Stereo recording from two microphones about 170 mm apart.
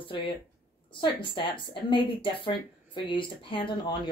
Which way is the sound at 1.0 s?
30° left (ahead or behind).